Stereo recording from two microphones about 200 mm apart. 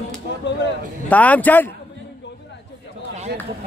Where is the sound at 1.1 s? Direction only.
5° left (ahead or behind).